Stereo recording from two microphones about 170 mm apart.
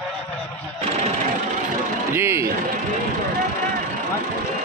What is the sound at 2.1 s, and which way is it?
Speech, 15° right (ahead or behind).